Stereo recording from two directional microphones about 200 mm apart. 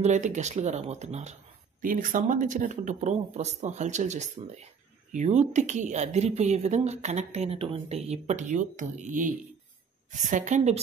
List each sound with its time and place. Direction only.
0.0 s speech: 35° right (ahead or behind)